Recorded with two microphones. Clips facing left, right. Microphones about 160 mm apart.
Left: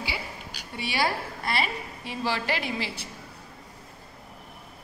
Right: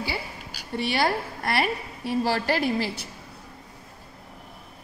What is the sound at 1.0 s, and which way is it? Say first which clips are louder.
A woman's voice: right 3 dB; 50° right (ahead or behind).